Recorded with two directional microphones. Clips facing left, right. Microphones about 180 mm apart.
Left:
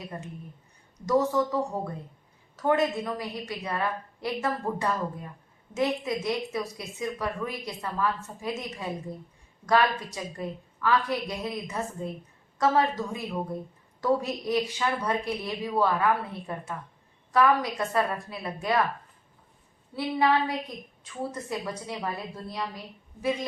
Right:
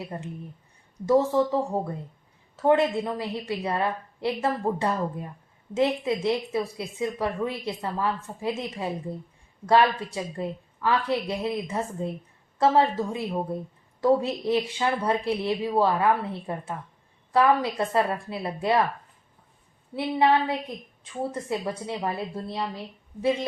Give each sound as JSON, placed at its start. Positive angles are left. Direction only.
{"t": 0.1, "sound": "a woman's voice", "side_deg": -20}
{"t": 21.0, "sound": "a woman's voice", "side_deg": -25}